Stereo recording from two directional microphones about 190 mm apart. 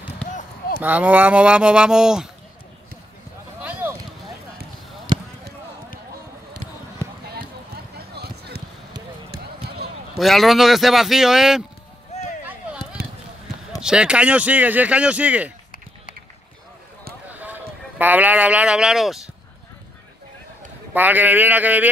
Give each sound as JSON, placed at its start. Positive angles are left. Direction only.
{"t": 0.2, "sound": "basketball bounce", "side_deg": 40}
{"t": 0.7, "sound": "a man's voice", "side_deg": -10}
{"t": 3.6, "sound": "a sound", "side_deg": -10}
{"t": 7.0, "sound": "basketball bounce", "side_deg": 15}
{"t": 8.2, "sound": "basketball bounce", "side_deg": -55}
{"t": 10.1, "sound": "a man's voice", "side_deg": 0}
{"t": 13.0, "sound": "basketball bounce", "side_deg": -50}
{"t": 13.7, "sound": "speech", "side_deg": -5}
{"t": 17.3, "sound": "speech", "side_deg": -10}
{"t": 20.9, "sound": "speech", "side_deg": -10}